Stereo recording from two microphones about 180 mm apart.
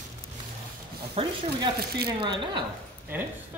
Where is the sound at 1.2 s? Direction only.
30° right (ahead or behind).